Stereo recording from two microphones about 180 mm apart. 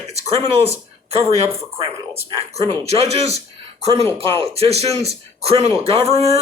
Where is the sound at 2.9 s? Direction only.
35° right (ahead or behind).